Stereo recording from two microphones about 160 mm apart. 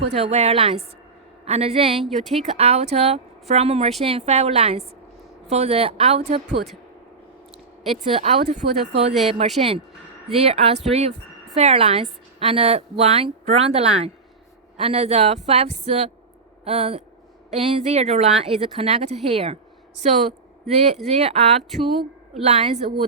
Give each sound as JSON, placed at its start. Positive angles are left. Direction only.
{"t": 0.1, "sound": "a woman's voice", "side_deg": -40}
{"t": 7.9, "sound": "a woman's voice", "side_deg": -40}
{"t": 20.7, "sound": "a woman's voice", "side_deg": -40}